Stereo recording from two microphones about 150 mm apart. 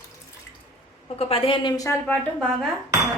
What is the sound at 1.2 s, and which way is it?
Speech, 40° left (ahead or behind).